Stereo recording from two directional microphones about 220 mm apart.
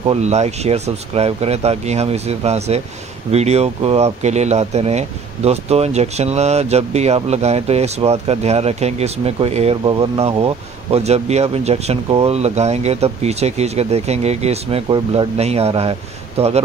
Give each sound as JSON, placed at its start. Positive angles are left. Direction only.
{"t": 0.0, "sound": "speech", "side_deg": -30}